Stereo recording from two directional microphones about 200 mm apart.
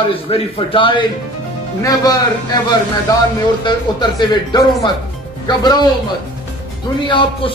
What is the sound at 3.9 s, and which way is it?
A man's voice, 20° left (ahead or behind).